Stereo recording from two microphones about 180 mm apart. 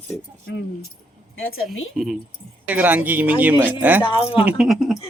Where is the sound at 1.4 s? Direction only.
90° left.